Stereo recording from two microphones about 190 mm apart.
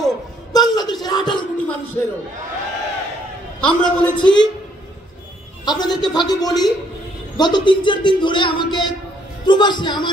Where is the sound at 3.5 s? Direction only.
5° left (ahead or behind).